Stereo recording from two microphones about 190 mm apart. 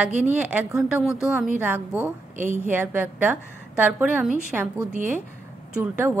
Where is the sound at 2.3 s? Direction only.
40° right (ahead or behind).